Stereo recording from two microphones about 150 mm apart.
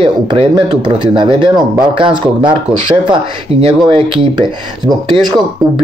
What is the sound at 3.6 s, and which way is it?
Speech, 35° right (ahead or behind).